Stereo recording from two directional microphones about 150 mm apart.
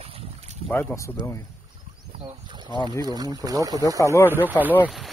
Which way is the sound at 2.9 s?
25° right (ahead or behind).